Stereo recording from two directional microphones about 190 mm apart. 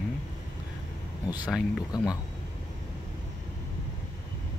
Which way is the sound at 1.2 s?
20° left (ahead or behind).